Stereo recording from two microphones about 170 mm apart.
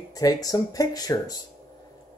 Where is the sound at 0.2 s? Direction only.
20° left (ahead or behind).